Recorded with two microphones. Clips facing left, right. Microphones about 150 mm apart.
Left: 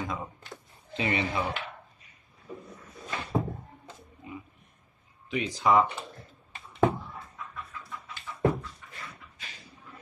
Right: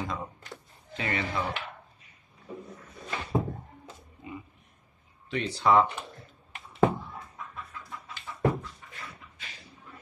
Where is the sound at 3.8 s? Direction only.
Centre (ahead or behind).